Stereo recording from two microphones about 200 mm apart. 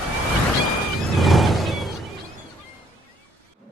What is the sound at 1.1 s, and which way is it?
Music, centre (ahead or behind).